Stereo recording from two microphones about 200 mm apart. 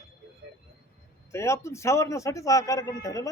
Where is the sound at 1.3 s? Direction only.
15° left (ahead or behind).